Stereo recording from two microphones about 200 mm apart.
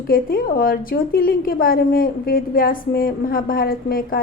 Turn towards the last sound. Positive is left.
turn(degrees=45)  # may be behind; listen again after turning